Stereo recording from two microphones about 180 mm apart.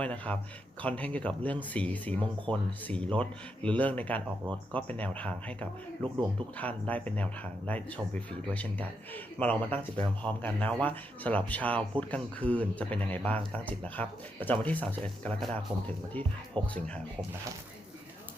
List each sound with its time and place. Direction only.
0.0 s speech: 5° left (ahead or behind)
16.6 s speech: 25° right (ahead or behind)